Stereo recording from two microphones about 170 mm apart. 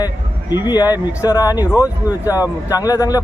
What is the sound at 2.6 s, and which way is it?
Speech, 20° left (ahead or behind).